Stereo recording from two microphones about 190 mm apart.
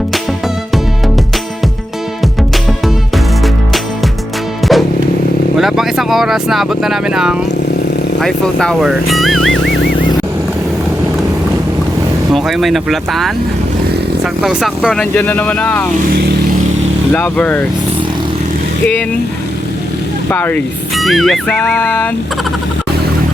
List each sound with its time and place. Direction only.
0.1 s music: centre (ahead or behind)
4.7 s music: centre (ahead or behind)
5.5 s speech: centre (ahead or behind)
9.5 s music: 60° left (ahead or behind)
12.3 s speech: centre (ahead or behind)
14.4 s speech: 5° right (ahead or behind)
15.1 s speech: 10° left (ahead or behind)
16.0 s speech: 50° right (ahead or behind)
17.1 s speech: 10° left (ahead or behind)
20.3 s speech: 10° left (ahead or behind)